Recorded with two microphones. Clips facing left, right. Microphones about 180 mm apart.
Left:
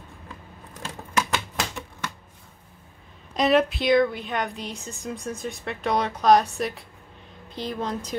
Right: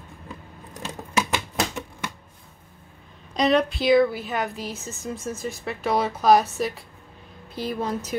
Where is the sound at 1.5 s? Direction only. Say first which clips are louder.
Right 4 dB; 15° right (ahead or behind).